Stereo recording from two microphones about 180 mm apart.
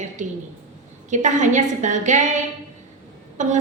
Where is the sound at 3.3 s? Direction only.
40° right (ahead or behind).